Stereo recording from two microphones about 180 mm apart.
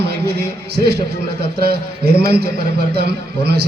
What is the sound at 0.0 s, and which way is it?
A man's voice, 65° right (ahead or behind).